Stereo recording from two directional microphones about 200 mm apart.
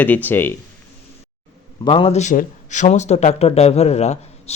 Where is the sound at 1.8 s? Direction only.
25° left (ahead or behind).